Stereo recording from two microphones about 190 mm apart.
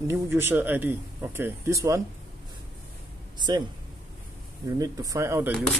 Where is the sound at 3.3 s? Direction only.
20° right (ahead or behind).